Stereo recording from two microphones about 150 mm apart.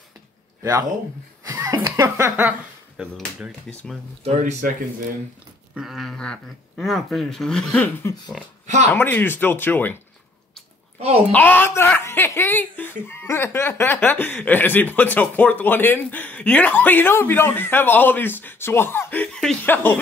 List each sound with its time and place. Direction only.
0.6 s speech: 25° right (ahead or behind); by 3.8 s centre (ahead or behind)
4.2 s speech: 50° right (ahead or behind)
5.8 s speech: centre (ahead or behind)
11.0 s a child's voice: 40° right (ahead or behind)
11.3 s speech: 15° left (ahead or behind)